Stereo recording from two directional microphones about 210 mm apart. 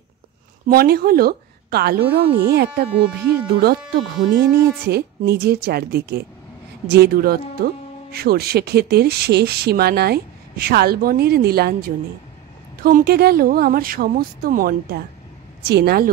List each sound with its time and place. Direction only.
0.7 s speech: 45° right (ahead or behind)